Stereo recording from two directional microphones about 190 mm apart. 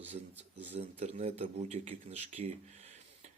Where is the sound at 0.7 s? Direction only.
35° right (ahead or behind).